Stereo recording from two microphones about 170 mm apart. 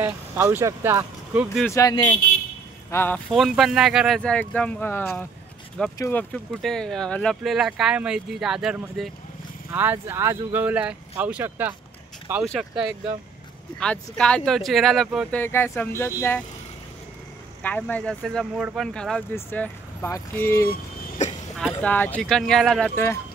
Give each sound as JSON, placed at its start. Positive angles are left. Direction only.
{"t": 0.0, "sound": "speech", "side_deg": -15}
{"t": 1.7, "sound": "speech", "side_deg": 20}
{"t": 3.3, "sound": "speech", "side_deg": 0}
{"t": 9.7, "sound": "speech", "side_deg": -10}
{"t": 13.7, "sound": "speech", "side_deg": 5}
{"t": 15.4, "sound": "speech", "side_deg": 15}
{"t": 17.6, "sound": "speech", "side_deg": 10}
{"t": 21.2, "sound": "a sound", "side_deg": 45}
{"t": 21.7, "sound": "speech", "side_deg": 10}